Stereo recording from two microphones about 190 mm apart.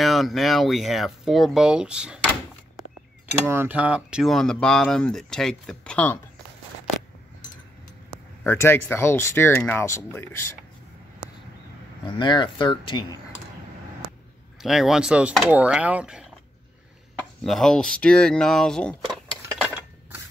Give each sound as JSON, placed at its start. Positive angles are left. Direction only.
{"t": 0.0, "sound": "speech", "side_deg": 0}
{"t": 3.4, "sound": "speech", "side_deg": -10}
{"t": 8.5, "sound": "speech", "side_deg": 10}
{"t": 12.2, "sound": "speech", "side_deg": 25}
{"t": 14.6, "sound": "speech", "side_deg": 0}
{"t": 17.4, "sound": "speech", "side_deg": 0}